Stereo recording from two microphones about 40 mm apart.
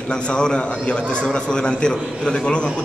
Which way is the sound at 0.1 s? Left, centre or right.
Left.